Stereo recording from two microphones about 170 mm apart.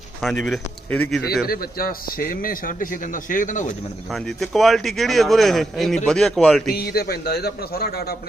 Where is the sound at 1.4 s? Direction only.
60° left (ahead or behind).